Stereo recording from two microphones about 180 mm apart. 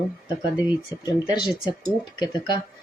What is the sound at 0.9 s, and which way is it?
Speech, 5° right (ahead or behind).